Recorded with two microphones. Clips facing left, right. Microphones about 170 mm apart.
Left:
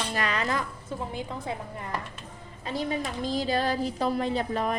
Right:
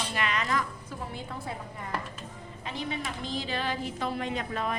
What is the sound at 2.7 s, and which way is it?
A woman's voice, 35° left (ahead or behind).